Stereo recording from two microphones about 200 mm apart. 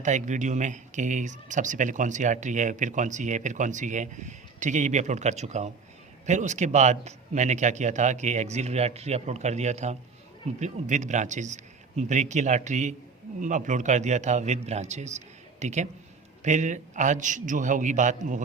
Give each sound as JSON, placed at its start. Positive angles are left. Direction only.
{"t": 0.0, "sound": "speech", "side_deg": -35}